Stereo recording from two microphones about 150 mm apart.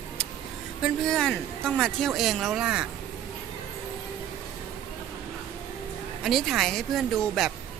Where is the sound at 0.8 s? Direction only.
5° left (ahead or behind).